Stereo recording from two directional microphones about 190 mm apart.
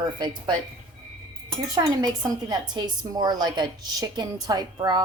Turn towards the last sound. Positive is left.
turn(degrees=-20)  # may be behind; listen again after turning